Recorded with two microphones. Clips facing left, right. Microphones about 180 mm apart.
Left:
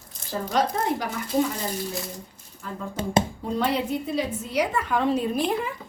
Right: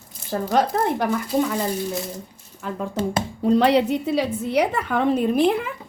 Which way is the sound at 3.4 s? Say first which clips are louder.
Right 8 dB; 75° right (ahead or behind).